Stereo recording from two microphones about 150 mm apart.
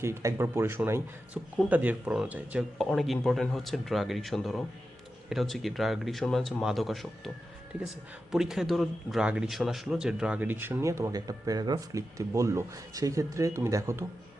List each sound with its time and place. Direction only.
0.0 s speech: 20° right (ahead or behind); by 7.1 s centre (ahead or behind)
8.3 s speech: 5° right (ahead or behind); by 14.0 s 20° right (ahead or behind)